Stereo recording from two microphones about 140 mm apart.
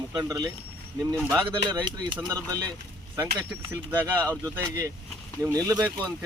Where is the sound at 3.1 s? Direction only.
20° right (ahead or behind).